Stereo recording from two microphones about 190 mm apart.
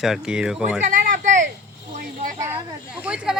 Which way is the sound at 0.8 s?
45° right (ahead or behind).